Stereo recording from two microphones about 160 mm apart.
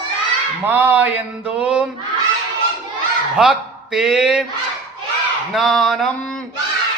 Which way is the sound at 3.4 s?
5° right (ahead or behind).